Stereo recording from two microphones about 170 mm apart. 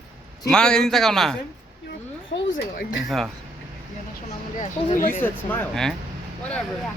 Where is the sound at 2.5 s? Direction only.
55° left (ahead or behind).